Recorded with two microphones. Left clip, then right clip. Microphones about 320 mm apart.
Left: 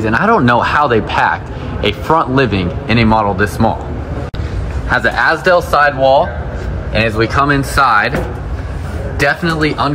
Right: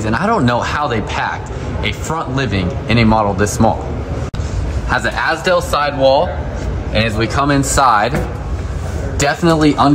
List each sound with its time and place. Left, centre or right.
0.0 s speech: centre
4.8 s speech: centre
9.2 s speech: centre